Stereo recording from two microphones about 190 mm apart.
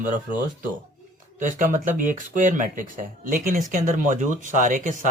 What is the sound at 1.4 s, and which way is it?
Speech, 45° right (ahead or behind).